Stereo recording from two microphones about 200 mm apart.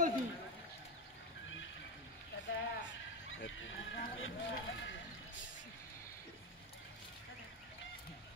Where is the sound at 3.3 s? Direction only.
70° left (ahead or behind).